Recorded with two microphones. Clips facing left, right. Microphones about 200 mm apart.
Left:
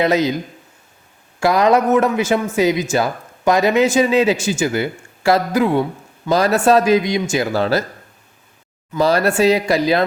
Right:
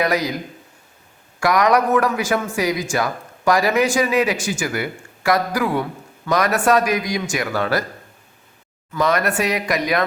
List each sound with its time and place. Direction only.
0.0 s a man's voice: 25° left (ahead or behind)
1.4 s a man's voice: 30° left (ahead or behind)
8.9 s a man's voice: 30° left (ahead or behind)